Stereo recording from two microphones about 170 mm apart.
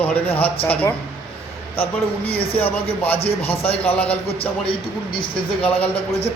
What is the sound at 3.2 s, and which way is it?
Speech, 35° left (ahead or behind).